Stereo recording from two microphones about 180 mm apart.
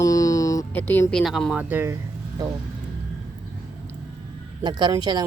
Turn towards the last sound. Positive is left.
turn(degrees=-20)  # may be behind; listen again after turning